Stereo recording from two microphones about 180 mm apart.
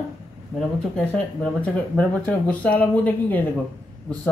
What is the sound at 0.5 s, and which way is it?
Speech, 5° left (ahead or behind).